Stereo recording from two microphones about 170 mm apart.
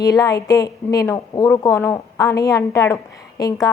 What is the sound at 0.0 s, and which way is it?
A woman's voice, 20° left (ahead or behind).